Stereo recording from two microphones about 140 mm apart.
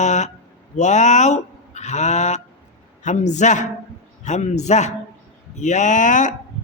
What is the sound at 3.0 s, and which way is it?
A man's voice, 60° left (ahead or behind).